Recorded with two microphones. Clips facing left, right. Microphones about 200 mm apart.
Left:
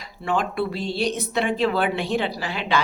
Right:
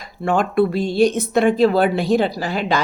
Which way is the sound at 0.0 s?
45° right (ahead or behind).